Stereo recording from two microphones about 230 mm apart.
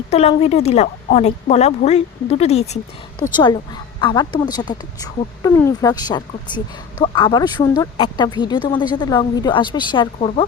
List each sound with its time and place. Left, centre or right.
0.1 s speech: left